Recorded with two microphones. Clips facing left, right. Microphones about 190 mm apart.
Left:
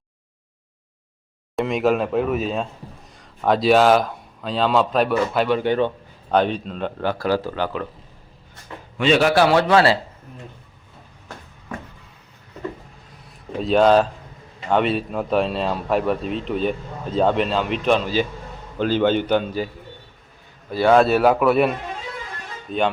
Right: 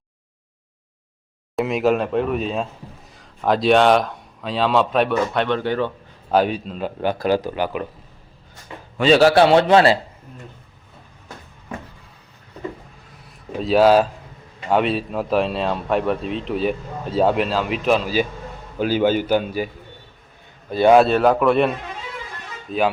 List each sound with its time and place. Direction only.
1.5 s speech: centre (ahead or behind)
5.6 s a man's voice: 20° left (ahead or behind)
6.3 s speech: 5° right (ahead or behind)
7.0 s a man's voice: 15° right (ahead or behind)
9.0 s a man's voice: 35° right (ahead or behind); by 10.0 s 20° right (ahead or behind)
13.6 s a man's voice: 5° right (ahead or behind)
20.7 s a man's voice: 20° right (ahead or behind)
21.1 s speech: 5° left (ahead or behind)